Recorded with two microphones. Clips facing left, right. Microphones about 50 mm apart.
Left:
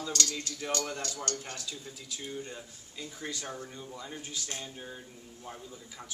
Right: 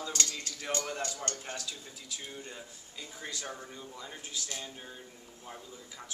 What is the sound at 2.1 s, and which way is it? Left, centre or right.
Speech, centre.